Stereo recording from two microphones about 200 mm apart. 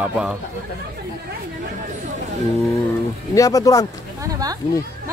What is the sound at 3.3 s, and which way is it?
Speech, 15° left (ahead or behind).